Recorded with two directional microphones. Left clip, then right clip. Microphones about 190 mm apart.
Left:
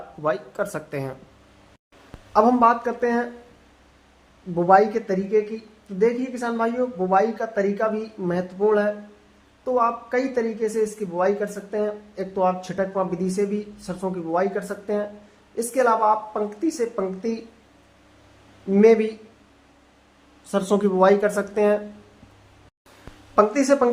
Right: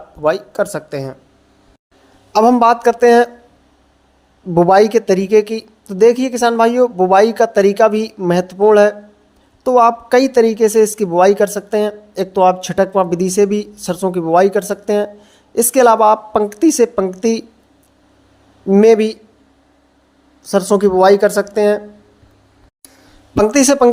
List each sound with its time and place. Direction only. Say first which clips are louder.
0.2 s speech: right 9 dB; 30° right (ahead or behind)
2.3 s a woman's voice: right 7 dB; 45° right (ahead or behind)
4.5 s a woman's voice: right 7 dB; 45° right (ahead or behind)
18.7 s a woman's voice: right 7 dB; 40° right (ahead or behind)
20.5 s a woman's voice: right 9 dB; 30° right (ahead or behind)
23.3 s a woman's voice: right 6 dB; 40° right (ahead or behind)